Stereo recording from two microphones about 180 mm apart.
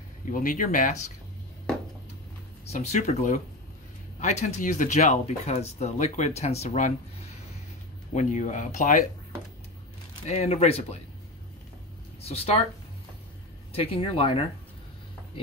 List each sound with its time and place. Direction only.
0.2 s speech: 50° left (ahead or behind)
2.6 s speech: 40° left (ahead or behind)
10.2 s speech: 35° left (ahead or behind)
12.2 s speech: 35° left (ahead or behind)
13.7 s speech: 30° left (ahead or behind)